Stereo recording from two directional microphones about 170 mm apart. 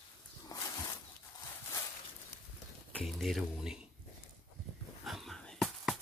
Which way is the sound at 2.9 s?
Centre (ahead or behind).